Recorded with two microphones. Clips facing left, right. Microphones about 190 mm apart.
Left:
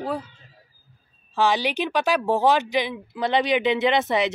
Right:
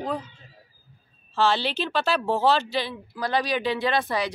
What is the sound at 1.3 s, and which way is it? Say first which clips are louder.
Speech: left 2 dB; 15° left (ahead or behind).